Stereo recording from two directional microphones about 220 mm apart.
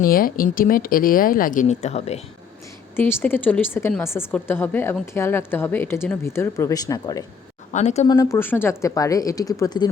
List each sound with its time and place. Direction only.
0.0 s speech: 40° left (ahead or behind)
2.9 s speech: 10° left (ahead or behind)
7.7 s speech: 30° left (ahead or behind)
8.0 s speech: 15° left (ahead or behind)